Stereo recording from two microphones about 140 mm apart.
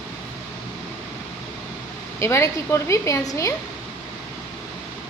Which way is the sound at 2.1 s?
20° left (ahead or behind).